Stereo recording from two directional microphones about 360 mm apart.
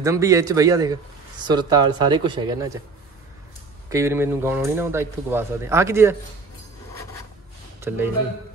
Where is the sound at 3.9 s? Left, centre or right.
Centre.